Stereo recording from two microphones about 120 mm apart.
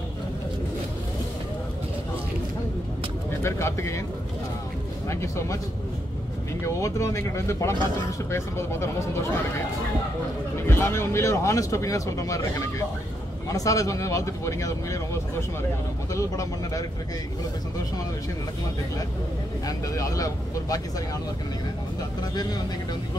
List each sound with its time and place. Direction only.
3.4 s speech: 20° left (ahead or behind)
5.0 s speech: 25° left (ahead or behind)
6.6 s speech: 25° left (ahead or behind)
10.5 s speech: 20° left (ahead or behind)
16.1 s speech: 25° left (ahead or behind)
19.6 s speech: 30° left (ahead or behind)
22.3 s speech: 35° left (ahead or behind)